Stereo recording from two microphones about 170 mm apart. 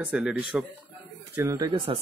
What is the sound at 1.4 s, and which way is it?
Speech, 20° right (ahead or behind).